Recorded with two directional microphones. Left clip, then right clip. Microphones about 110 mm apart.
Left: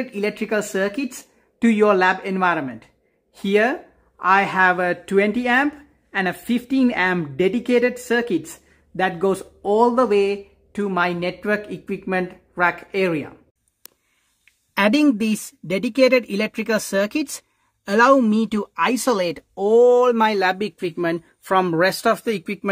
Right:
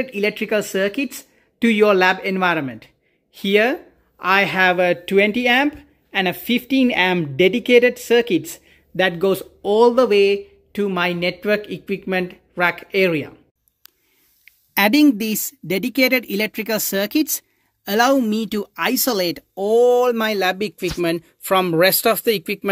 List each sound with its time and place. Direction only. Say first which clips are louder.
0.0 s speech: right 3 dB; 10° right (ahead or behind)
6.7 s speech: right 2 dB; 15° right (ahead or behind)
12.6 s speech: right 2 dB; 15° right (ahead or behind)
14.8 s speech: right 2 dB; centre (ahead or behind)